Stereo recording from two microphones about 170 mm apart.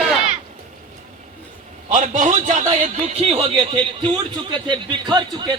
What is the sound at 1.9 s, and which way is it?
A man's voice, 45° right (ahead or behind).